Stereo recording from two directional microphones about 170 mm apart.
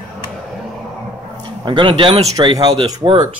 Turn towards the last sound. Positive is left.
turn(degrees=-30)  # may be behind; listen again after turning